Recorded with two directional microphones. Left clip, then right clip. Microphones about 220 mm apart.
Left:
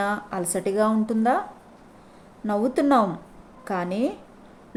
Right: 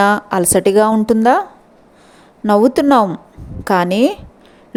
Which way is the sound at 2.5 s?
40° right (ahead or behind).